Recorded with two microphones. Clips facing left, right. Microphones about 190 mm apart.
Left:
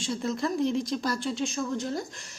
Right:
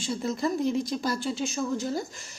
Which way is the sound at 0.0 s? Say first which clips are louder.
Right 1 dB; centre (ahead or behind).